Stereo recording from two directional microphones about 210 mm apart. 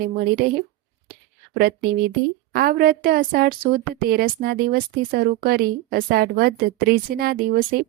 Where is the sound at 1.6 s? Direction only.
45° right (ahead or behind).